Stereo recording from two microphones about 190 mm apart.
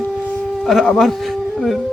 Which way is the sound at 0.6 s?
Centre (ahead or behind).